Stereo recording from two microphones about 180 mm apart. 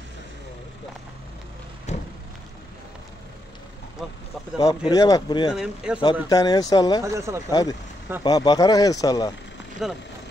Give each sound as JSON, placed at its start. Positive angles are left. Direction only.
{"t": 1.9, "sound": "music", "side_deg": 40}
{"t": 4.6, "sound": "speech", "side_deg": 20}
{"t": 5.5, "sound": "speech", "side_deg": -5}
{"t": 6.2, "sound": "speech", "side_deg": 20}
{"t": 7.2, "sound": "speech", "side_deg": -15}
{"t": 8.2, "sound": "speech", "side_deg": 20}
{"t": 9.8, "sound": "speech", "side_deg": 0}